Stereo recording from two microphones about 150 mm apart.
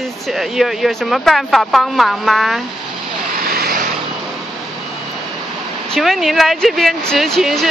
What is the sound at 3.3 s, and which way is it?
Vehicle, 85° right.